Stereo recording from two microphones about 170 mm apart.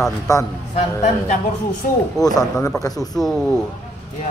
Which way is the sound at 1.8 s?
55° left (ahead or behind).